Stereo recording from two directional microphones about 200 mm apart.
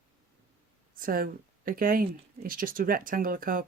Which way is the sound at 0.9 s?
45° right (ahead or behind).